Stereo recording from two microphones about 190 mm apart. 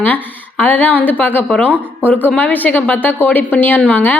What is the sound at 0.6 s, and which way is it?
A woman's voice, 10° left (ahead or behind).